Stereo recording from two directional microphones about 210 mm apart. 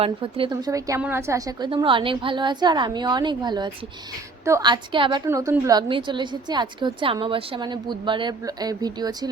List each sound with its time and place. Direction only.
0.0 s a woman's voice: 25° right (ahead or behind)